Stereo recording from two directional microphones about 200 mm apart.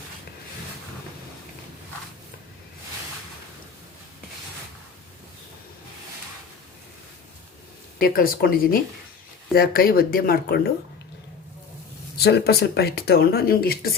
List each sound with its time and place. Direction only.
7.9 s speech: 45° left (ahead or behind)
12.1 s speech: 55° left (ahead or behind)